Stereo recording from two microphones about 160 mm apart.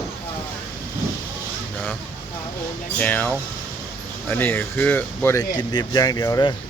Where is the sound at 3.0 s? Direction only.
10° left (ahead or behind).